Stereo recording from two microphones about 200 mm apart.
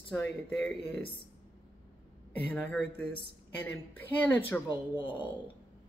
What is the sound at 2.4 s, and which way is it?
A woman's voice, 10° left (ahead or behind).